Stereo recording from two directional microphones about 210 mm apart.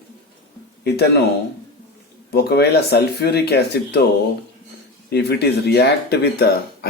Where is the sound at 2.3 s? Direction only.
50° left (ahead or behind).